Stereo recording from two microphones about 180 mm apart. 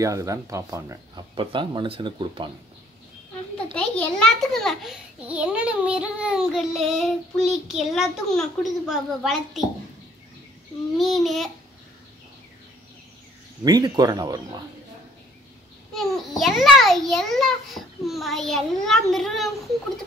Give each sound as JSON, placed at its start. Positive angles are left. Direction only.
{"t": 0.0, "sound": "speech", "side_deg": -15}
{"t": 1.3, "sound": "speech", "side_deg": -30}
{"t": 3.7, "sound": "a child's voice", "side_deg": 5}
{"t": 11.0, "sound": "a child's voice", "side_deg": 0}
{"t": 13.7, "sound": "speech", "side_deg": -20}
{"t": 15.9, "sound": "a child's voice", "side_deg": 0}